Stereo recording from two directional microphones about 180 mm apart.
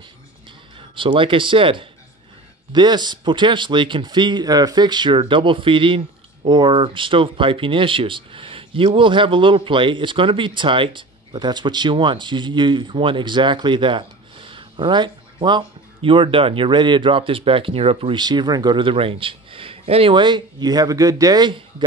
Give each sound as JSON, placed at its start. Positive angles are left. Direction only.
{"t": 0.7, "sound": "speech", "side_deg": -30}